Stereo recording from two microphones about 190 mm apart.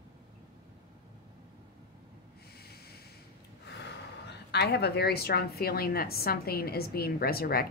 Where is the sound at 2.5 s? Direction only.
55° left (ahead or behind).